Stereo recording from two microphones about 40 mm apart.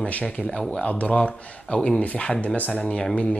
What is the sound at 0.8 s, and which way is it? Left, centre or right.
Speech, left.